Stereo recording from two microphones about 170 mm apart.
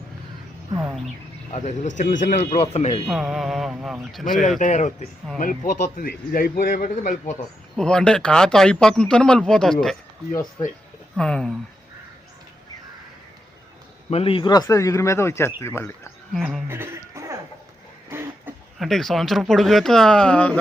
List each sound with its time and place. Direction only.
1.5 s a man's voice: 45° left (ahead or behind)
2.6 s speech: 35° left (ahead or behind)
3.1 s speech: centre (ahead or behind)
4.4 s a man's voice: 50° left (ahead or behind)
7.8 s speech: 5° left (ahead or behind)
11.2 s speech: 5° left (ahead or behind)
14.1 s a man's voice: 35° left (ahead or behind); by 15.9 s 15° left (ahead or behind)
16.3 s speech: centre (ahead or behind)
16.6 s music: 15° right (ahead or behind)
18.1 s a sound: 15° right (ahead or behind)
18.8 s speech: centre (ahead or behind)